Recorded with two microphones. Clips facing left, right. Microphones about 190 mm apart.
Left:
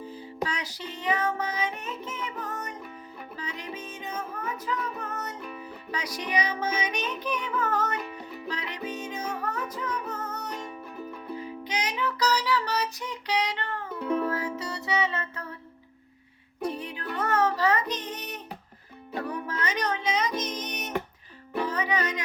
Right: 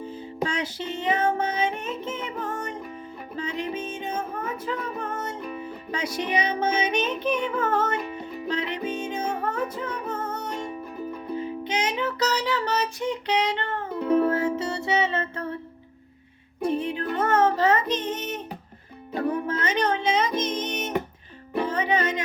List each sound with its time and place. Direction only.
0.4 s music: 25° right (ahead or behind)
10.7 s music: 5° right (ahead or behind)
11.3 s music: 25° right (ahead or behind)
16.6 s music: 25° right (ahead or behind)